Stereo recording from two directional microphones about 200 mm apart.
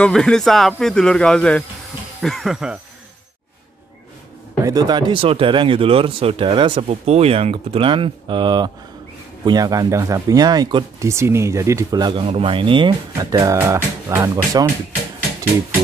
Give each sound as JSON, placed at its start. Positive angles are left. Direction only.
{"t": 0.0, "sound": "speech", "side_deg": 5}
{"t": 4.6, "sound": "speech", "side_deg": -20}